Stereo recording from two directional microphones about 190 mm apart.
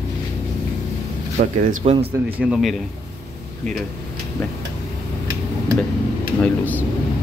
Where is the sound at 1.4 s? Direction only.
50° right (ahead or behind).